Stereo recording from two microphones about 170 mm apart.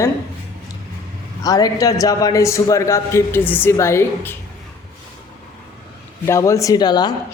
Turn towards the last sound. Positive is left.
turn(degrees=25)  # may be behind; listen again after turning